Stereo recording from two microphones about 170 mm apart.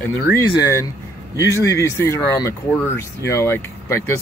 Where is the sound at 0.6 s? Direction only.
20° left (ahead or behind).